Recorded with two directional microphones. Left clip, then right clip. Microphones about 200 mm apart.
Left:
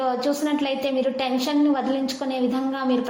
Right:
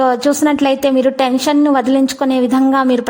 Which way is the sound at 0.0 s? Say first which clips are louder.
Right 10 dB; 45° right (ahead or behind).